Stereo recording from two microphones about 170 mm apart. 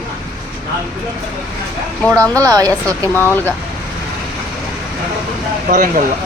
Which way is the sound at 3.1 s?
10° left (ahead or behind).